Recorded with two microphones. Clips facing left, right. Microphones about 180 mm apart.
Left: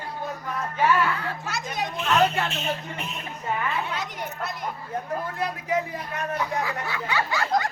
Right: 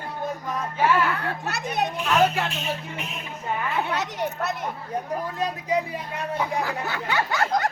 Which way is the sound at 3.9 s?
70° right (ahead or behind).